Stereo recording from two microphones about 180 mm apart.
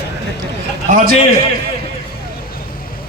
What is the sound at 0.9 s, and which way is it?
Speech, 45° right (ahead or behind).